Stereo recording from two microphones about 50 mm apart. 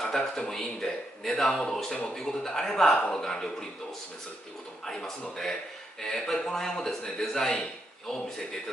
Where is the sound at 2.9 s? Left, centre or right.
Left.